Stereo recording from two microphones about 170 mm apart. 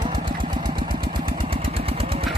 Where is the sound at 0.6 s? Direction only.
30° right (ahead or behind).